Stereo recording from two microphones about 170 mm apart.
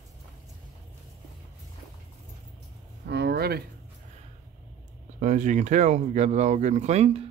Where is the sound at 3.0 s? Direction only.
75° right (ahead or behind).